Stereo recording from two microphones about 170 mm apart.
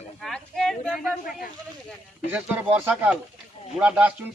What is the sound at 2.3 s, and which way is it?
Speech, 10° right (ahead or behind).